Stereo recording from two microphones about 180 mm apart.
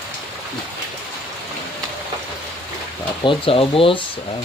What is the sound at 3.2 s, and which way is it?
Speech, 30° left (ahead or behind).